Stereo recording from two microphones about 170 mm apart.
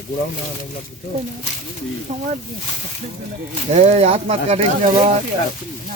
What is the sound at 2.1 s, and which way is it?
Speech, 40° right (ahead or behind).